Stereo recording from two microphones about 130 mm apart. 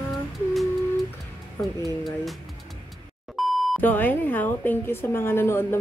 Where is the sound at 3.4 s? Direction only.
Centre (ahead or behind).